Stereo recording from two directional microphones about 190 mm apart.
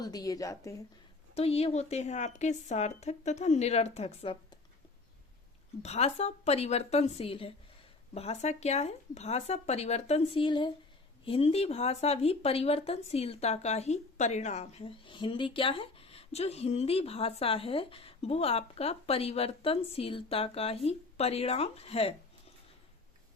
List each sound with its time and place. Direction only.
0.0 s speech: 20° left (ahead or behind)
1.4 s speech: 30° left (ahead or behind)
5.8 s speech: 35° left (ahead or behind)